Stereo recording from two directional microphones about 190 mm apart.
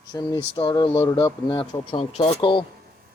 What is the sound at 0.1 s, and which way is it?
Speech, 20° left (ahead or behind).